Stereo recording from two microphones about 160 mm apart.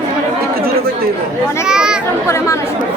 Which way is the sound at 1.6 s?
5° right (ahead or behind).